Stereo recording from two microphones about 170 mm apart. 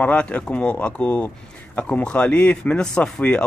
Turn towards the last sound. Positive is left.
turn(degrees=5)  # may be behind; listen again after turning